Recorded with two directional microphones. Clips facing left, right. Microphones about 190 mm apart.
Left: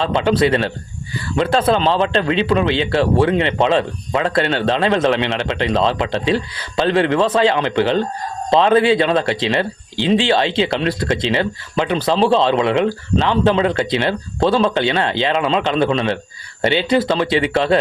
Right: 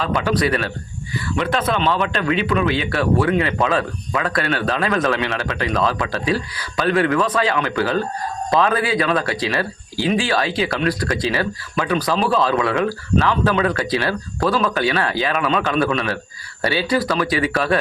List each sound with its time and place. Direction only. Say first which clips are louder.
0.0 s speech: left 4 dB; 25° left (ahead or behind)